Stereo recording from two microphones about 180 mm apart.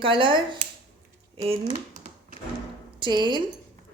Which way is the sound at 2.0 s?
40° right (ahead or behind).